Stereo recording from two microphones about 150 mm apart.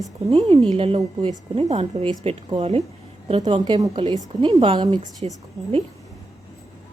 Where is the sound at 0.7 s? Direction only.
40° right (ahead or behind).